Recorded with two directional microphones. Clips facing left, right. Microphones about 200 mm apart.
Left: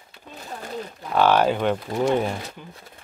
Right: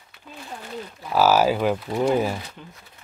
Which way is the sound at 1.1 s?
5° right (ahead or behind).